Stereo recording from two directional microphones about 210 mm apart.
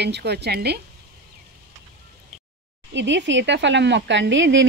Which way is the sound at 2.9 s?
60° right (ahead or behind).